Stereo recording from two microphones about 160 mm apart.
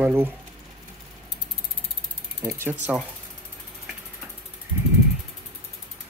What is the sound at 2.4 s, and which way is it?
Speech, 15° right (ahead or behind).